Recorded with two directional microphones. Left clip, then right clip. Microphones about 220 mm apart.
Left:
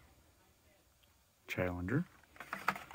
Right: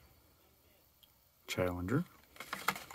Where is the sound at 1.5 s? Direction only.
10° right (ahead or behind).